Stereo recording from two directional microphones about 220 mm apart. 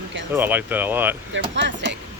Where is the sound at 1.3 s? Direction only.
55° right (ahead or behind).